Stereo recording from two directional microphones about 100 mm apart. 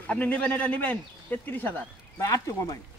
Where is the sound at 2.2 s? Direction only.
35° left (ahead or behind).